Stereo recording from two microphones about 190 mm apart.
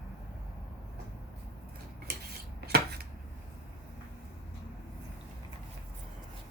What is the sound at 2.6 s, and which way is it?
Chopping, 55° right (ahead or behind).